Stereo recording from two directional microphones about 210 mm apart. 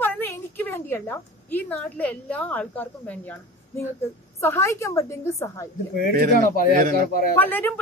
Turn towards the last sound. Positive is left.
turn(degrees=10)  # may be behind; listen again after turning